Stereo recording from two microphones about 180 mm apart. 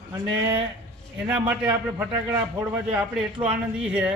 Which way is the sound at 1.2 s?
10° right (ahead or behind).